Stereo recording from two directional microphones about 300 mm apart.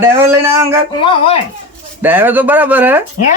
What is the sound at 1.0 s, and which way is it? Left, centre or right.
Speech, centre.